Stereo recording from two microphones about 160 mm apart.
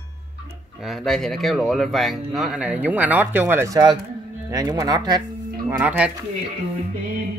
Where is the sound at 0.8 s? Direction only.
Centre (ahead or behind); by 5.2 s 25° right (ahead or behind).